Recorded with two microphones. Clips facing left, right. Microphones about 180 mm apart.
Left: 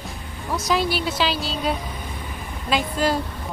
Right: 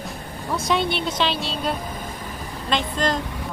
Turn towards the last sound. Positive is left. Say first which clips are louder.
# left 1 dB
turn(degrees=5)  # may be behind; listen again after turning